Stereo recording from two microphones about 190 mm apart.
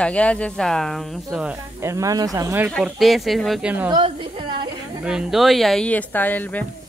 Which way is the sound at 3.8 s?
25° right (ahead or behind).